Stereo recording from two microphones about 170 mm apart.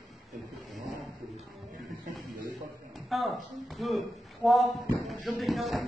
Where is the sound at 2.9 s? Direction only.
Centre (ahead or behind).